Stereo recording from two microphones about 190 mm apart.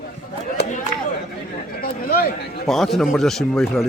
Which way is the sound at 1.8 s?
50° left (ahead or behind).